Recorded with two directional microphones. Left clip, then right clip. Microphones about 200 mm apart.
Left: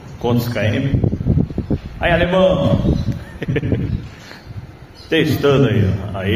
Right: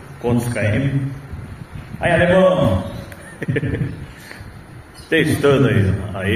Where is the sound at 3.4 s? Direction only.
10° left (ahead or behind).